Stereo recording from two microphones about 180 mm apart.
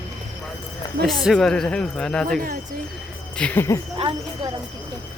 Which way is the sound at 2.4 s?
55° right (ahead or behind).